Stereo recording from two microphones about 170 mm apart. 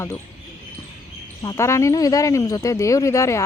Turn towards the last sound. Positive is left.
turn(degrees=15)  # may be behind; listen again after turning